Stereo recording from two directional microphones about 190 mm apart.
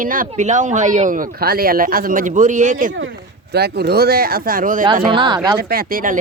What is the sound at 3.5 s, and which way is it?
Speech, 55° right (ahead or behind).